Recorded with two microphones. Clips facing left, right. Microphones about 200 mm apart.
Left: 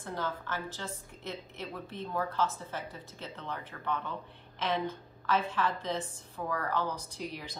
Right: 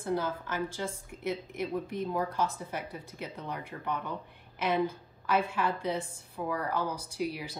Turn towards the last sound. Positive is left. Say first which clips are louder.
# right 6 dB
turn(degrees=-10)  # may be behind; listen again after turning